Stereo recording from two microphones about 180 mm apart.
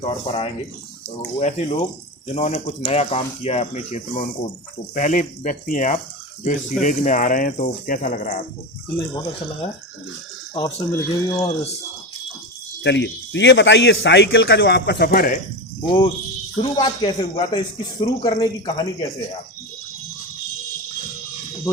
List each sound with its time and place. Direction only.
0.1 s speech: 30° left (ahead or behind); by 8.4 s 50° left (ahead or behind)
9.0 s speech: 15° left (ahead or behind)
12.8 s a man's voice: 80° left; by 15.4 s 55° left (ahead or behind)
16.7 s speech: 25° left (ahead or behind)